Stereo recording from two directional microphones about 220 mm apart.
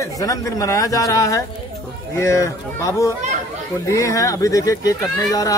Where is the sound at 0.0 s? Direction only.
15° left (ahead or behind).